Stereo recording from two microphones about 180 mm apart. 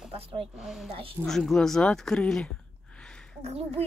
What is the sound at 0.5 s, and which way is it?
Speech, centre (ahead or behind).